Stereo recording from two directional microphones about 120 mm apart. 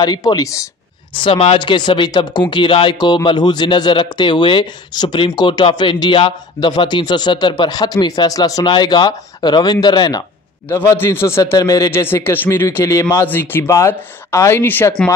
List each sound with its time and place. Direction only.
0.0 s speech: 35° left (ahead or behind)
1.1 s speech: 45° left (ahead or behind)
10.7 s speech: 20° left (ahead or behind)
12.0 s speech: 20° left (ahead or behind)